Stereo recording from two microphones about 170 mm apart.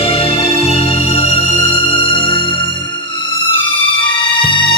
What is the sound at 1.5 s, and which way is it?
Music, 20° left (ahead or behind).